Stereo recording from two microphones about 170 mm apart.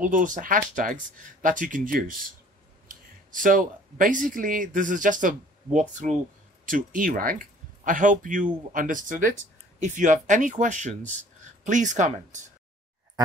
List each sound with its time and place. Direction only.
0.0 s speech: 50° right (ahead or behind)